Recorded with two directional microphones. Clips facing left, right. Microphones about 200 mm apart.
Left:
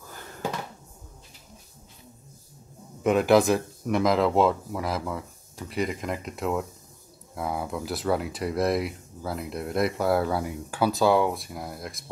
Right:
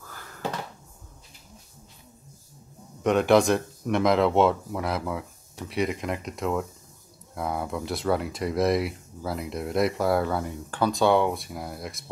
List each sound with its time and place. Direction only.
0.0 s cupboard open or close: 20° left (ahead or behind)
3.0 s speech: 5° left (ahead or behind)